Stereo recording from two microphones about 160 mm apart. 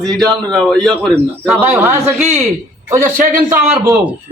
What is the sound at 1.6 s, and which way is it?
A man's voice, 15° right (ahead or behind).